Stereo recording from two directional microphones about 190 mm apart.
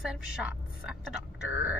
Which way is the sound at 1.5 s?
10° right (ahead or behind).